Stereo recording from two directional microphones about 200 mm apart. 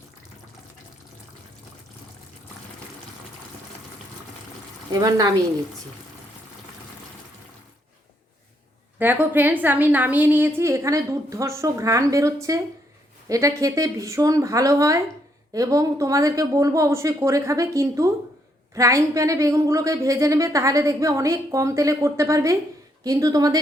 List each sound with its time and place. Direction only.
4.9 s a woman's voice: 20° right (ahead or behind)
9.0 s a woman's voice: 10° right (ahead or behind)